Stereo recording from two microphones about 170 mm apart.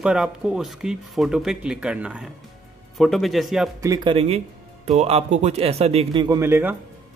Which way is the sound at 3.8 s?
20° right (ahead or behind).